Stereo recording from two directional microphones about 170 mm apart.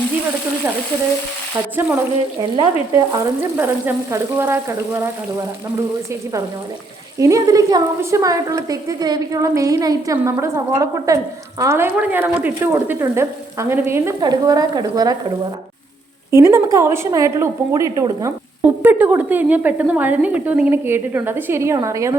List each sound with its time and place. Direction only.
1.7 s a woman's voice: 10° right (ahead or behind)
2.6 s a woman's voice: 25° right (ahead or behind)
3.6 s a woman's voice: 15° right (ahead or behind)
7.2 s a woman's voice: 20° right (ahead or behind)
16.3 s a woman's voice: 15° right (ahead or behind)